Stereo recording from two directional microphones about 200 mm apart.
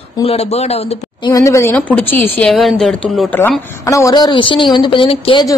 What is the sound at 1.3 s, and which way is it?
A woman's voice, 15° left (ahead or behind).